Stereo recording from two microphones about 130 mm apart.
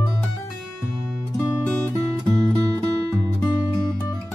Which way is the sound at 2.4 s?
10° left (ahead or behind).